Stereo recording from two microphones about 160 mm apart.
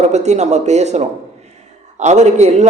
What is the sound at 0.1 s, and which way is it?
A man's voice, 45° right (ahead or behind).